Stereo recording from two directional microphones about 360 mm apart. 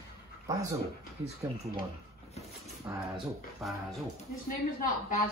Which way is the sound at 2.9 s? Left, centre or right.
Centre.